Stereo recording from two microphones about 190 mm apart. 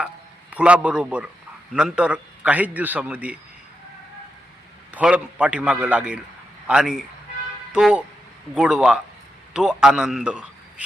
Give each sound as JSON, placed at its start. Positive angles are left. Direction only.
{"t": 0.5, "sound": "a man's voice", "side_deg": -5}
{"t": 4.9, "sound": "a man's voice", "side_deg": -5}